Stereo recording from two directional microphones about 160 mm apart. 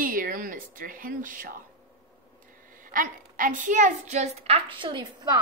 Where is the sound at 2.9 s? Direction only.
60° right (ahead or behind); by 5.4 s 25° right (ahead or behind).